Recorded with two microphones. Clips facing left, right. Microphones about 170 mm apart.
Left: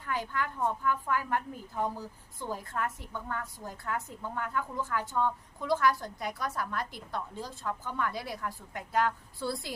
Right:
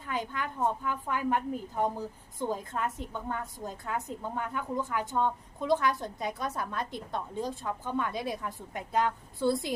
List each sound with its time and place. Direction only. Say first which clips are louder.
0.0 s a woman's voice: even; 20° right (ahead or behind)